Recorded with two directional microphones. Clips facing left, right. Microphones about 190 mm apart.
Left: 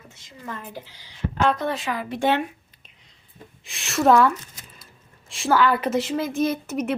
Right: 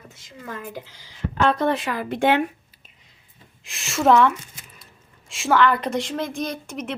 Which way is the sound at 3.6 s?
Centre (ahead or behind).